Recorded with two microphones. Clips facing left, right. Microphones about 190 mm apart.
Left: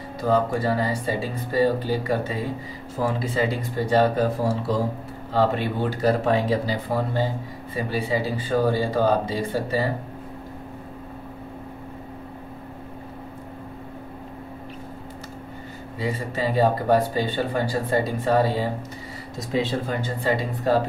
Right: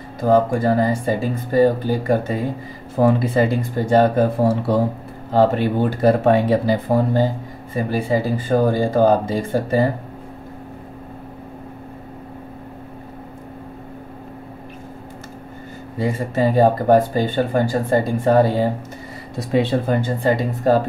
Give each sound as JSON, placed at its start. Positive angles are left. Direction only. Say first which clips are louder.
{"t": 0.2, "sound": "speech", "louder": "right 6 dB", "side_deg": -50}
{"t": 5.3, "sound": "speech", "louder": "right 6 dB", "side_deg": -45}
{"t": 16.0, "sound": "speech", "louder": "right 7 dB", "side_deg": -45}
{"t": 19.3, "sound": "speech", "louder": "right 6 dB", "side_deg": -60}